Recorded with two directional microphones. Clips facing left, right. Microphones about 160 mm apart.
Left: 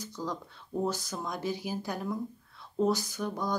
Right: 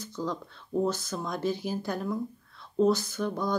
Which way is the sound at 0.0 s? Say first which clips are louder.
Right 3 dB; 15° left (ahead or behind).